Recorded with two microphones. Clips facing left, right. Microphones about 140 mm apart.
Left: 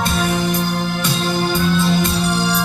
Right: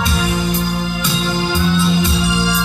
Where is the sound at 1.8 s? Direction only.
55° left (ahead or behind).